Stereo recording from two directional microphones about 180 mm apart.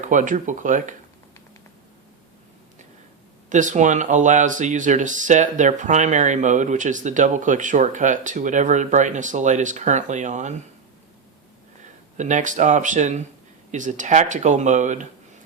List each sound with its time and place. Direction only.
0.0 s speech: 45° right (ahead or behind)
3.5 s speech: 45° right (ahead or behind)
12.1 s speech: 40° right (ahead or behind)